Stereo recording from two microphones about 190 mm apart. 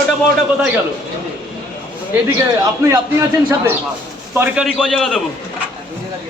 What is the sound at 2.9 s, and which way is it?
A man's voice, 15° right (ahead or behind).